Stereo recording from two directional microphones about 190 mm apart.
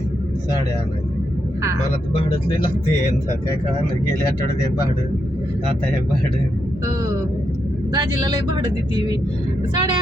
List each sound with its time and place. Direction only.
7.9 s speech: 20° right (ahead or behind)